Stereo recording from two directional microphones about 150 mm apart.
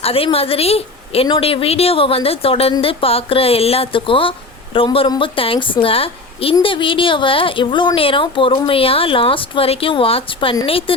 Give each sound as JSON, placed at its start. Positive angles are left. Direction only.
{"t": 0.0, "sound": "speech", "side_deg": 40}